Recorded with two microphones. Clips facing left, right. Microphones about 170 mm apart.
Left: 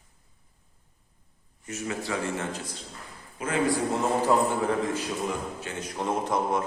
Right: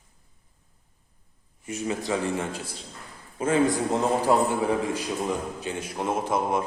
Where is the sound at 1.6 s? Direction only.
15° right (ahead or behind).